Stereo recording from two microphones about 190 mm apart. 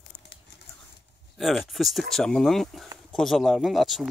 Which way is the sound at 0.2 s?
65° left (ahead or behind).